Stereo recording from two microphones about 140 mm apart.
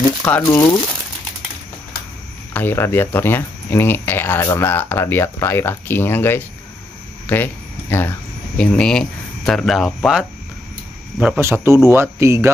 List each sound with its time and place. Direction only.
0.2 s speech: 20° left (ahead or behind)
2.5 s speech: 15° left (ahead or behind)
11.3 s speech: 20° right (ahead or behind)